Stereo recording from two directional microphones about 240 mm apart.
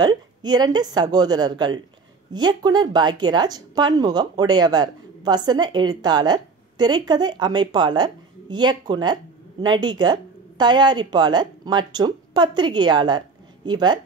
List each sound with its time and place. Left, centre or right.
0.0 s speech: centre